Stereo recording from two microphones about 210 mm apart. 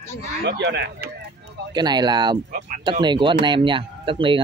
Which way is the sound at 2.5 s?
40° right (ahead or behind).